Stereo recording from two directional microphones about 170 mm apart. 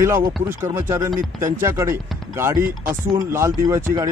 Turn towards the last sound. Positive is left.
turn(degrees=-20)  # may be behind; listen again after turning